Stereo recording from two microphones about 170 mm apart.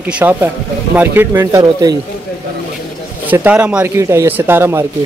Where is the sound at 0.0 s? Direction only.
10° right (ahead or behind).